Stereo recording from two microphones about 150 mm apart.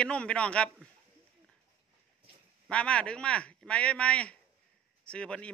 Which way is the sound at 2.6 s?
5° left (ahead or behind).